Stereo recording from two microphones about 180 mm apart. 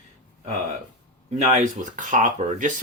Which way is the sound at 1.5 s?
45° right (ahead or behind).